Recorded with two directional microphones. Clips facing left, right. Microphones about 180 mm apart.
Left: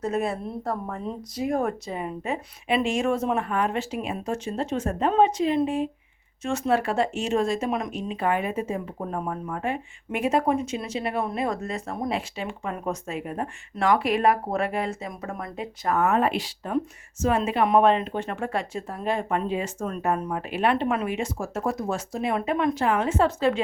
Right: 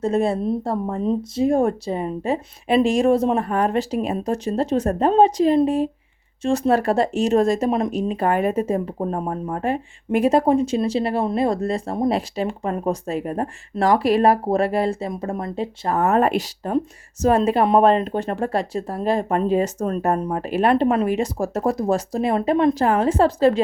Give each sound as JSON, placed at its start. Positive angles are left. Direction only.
{"t": 0.0, "sound": "speech", "side_deg": -30}